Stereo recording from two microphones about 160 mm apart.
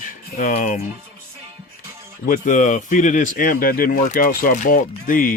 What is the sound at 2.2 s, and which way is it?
Speech, 55° left (ahead or behind).